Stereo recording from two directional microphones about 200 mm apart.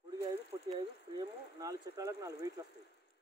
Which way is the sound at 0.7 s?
20° right (ahead or behind).